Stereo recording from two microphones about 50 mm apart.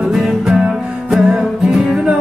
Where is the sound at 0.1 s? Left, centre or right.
Centre.